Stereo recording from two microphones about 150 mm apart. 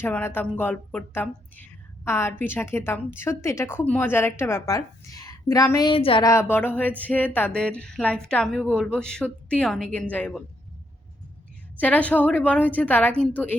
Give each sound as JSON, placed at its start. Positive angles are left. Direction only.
{"t": 0.0, "sound": "a woman's voice", "side_deg": 15}
{"t": 5.9, "sound": "speech", "side_deg": 35}
{"t": 6.2, "sound": "a woman's voice", "side_deg": 15}
{"t": 11.8, "sound": "a woman's voice", "side_deg": 10}